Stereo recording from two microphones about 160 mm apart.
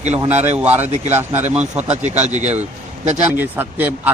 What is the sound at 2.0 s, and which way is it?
A man's voice, 45° right (ahead or behind).